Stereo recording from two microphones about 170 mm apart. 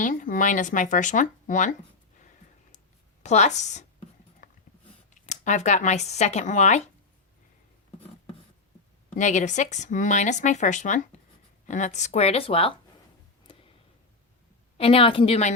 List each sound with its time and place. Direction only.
0.0 s speech: 50° left (ahead or behind)
3.2 s speech: 40° left (ahead or behind)
4.4 s a sound: 50° left (ahead or behind)
5.2 s speech: 45° left (ahead or behind)
9.0 s speech: 45° left (ahead or behind)
14.8 s speech: 35° left (ahead or behind)